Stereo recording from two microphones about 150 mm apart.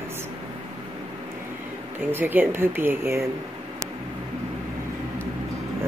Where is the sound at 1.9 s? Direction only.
15° right (ahead or behind).